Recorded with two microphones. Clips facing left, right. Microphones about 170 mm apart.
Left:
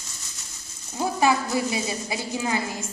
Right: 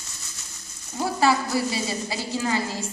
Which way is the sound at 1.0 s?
15° left (ahead or behind).